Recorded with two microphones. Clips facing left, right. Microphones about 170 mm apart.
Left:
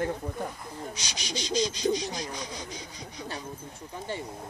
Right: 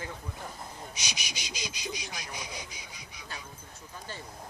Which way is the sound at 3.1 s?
35° left (ahead or behind).